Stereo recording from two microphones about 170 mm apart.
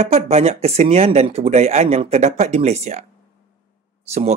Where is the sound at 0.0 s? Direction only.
35° right (ahead or behind).